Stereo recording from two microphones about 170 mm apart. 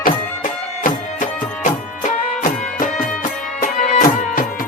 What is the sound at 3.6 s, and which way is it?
Music, 50° left (ahead or behind).